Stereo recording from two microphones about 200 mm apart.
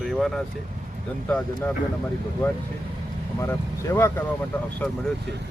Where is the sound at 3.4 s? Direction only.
10° left (ahead or behind).